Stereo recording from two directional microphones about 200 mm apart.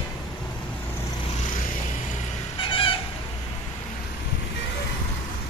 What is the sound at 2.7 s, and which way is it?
Fowl, 25° left (ahead or behind).